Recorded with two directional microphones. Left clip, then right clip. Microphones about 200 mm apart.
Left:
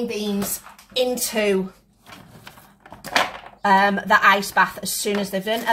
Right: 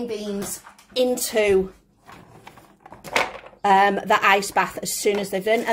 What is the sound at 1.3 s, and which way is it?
Speech, 45° right (ahead or behind).